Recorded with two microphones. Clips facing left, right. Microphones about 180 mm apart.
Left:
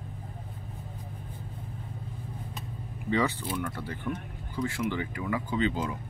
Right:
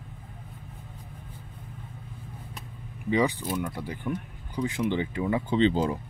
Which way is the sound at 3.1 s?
15° right (ahead or behind).